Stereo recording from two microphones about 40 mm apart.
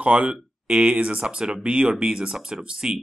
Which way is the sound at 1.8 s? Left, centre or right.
Right.